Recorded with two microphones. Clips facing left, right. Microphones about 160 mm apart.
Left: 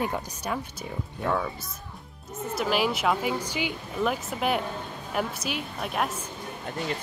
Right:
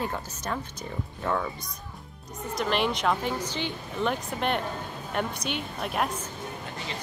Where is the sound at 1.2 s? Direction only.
Centre (ahead or behind).